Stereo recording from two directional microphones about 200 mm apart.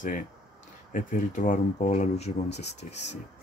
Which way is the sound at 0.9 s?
40° left (ahead or behind).